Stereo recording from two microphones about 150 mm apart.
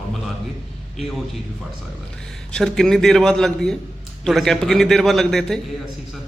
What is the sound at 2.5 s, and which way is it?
A man's voice, 5° left (ahead or behind).